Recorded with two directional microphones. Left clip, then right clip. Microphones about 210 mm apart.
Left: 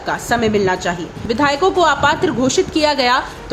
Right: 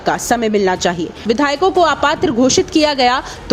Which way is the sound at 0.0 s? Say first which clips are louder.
Right 2 dB; 35° right (ahead or behind).